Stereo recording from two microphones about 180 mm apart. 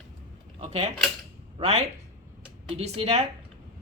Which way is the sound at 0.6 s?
35° right (ahead or behind).